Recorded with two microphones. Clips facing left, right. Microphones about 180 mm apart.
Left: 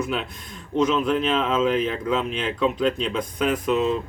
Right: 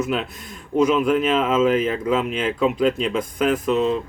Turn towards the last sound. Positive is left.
turn(degrees=0)  # may be behind; listen again after turning